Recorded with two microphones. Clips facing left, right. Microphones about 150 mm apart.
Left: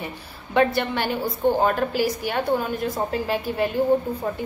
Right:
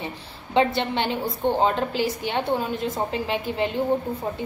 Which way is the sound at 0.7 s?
20° right (ahead or behind).